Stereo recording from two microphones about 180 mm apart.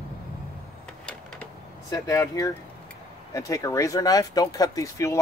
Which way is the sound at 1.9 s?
15° left (ahead or behind).